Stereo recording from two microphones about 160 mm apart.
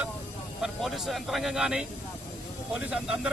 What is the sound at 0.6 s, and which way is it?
Speech, centre (ahead or behind).